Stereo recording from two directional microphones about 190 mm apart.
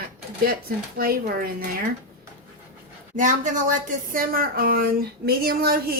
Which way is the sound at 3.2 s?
45° right (ahead or behind).